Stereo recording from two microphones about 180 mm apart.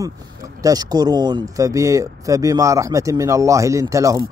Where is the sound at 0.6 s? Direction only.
20° right (ahead or behind).